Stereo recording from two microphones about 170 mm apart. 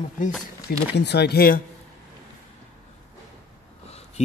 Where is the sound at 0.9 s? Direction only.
75° left (ahead or behind).